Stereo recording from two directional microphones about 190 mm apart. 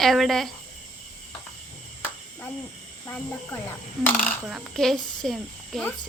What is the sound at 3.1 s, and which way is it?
Speech, 10° left (ahead or behind).